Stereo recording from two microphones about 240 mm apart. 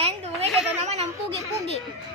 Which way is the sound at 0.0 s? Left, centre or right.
Right.